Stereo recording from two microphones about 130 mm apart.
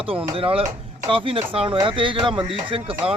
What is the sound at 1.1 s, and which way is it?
Speech, 45° right (ahead or behind).